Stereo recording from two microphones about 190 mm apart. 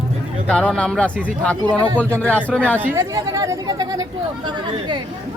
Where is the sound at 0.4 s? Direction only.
5° left (ahead or behind).